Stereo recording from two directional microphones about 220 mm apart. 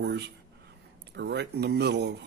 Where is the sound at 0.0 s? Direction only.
50° right (ahead or behind).